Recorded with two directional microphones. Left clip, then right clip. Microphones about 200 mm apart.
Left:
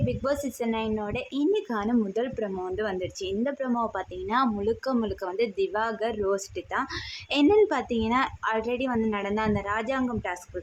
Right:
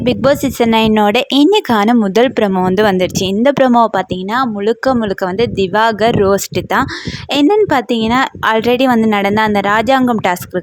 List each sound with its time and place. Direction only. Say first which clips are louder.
0.0 s speech: right 16 dB; 45° right (ahead or behind)